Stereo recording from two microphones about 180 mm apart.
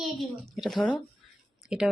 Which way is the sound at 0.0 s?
Centre (ahead or behind).